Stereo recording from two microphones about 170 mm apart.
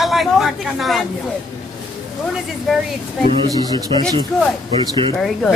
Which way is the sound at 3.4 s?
25° right (ahead or behind).